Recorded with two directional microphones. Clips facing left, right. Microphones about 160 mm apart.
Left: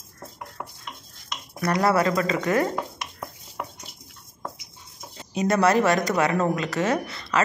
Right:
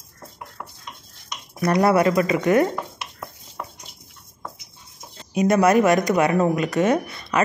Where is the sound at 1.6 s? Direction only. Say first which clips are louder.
Right 4 dB; 25° right (ahead or behind).